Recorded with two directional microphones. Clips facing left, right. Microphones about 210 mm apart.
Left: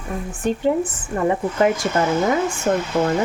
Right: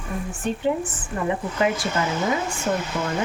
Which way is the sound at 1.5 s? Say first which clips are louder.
Left 3 dB; 45° left (ahead or behind).